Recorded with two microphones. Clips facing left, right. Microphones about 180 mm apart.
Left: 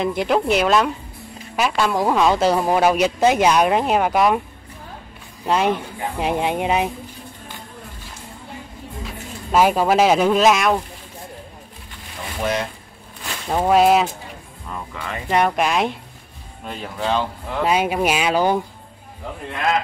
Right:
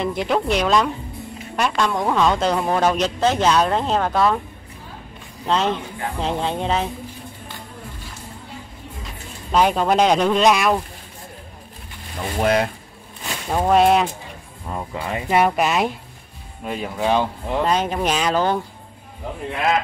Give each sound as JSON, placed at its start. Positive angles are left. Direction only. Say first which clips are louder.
{"t": 0.0, "sound": "speech", "louder": "left 2 dB", "side_deg": 0}
{"t": 5.4, "sound": "speech", "louder": "left 2 dB", "side_deg": 10}
{"t": 9.5, "sound": "speech", "louder": "left 1 dB", "side_deg": 5}
{"t": 12.4, "sound": "speech", "louder": "right 4 dB", "side_deg": -60}
{"t": 13.5, "sound": "speech", "louder": "left 1 dB", "side_deg": 0}
{"t": 14.7, "sound": "speech", "louder": "right 4 dB", "side_deg": -30}
{"t": 15.2, "sound": "speech", "louder": "even", "side_deg": -5}
{"t": 17.6, "sound": "speech", "louder": "left 4 dB", "side_deg": 10}